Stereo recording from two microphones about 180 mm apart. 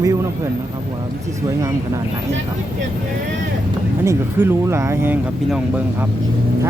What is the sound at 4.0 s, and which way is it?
Speech, 15° right (ahead or behind).